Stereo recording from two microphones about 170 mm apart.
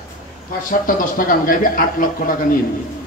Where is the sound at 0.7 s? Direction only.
55° left (ahead or behind).